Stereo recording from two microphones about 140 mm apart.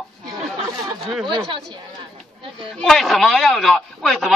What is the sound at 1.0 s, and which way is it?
Speech, centre (ahead or behind).